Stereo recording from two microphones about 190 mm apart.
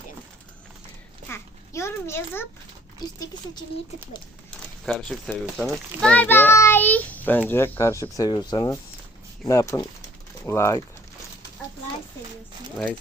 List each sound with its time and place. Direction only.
1.3 s a child's voice: 15° left (ahead or behind)
4.9 s a child's voice: 5° left (ahead or behind)